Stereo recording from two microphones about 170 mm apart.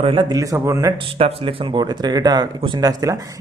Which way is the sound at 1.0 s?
35° right (ahead or behind).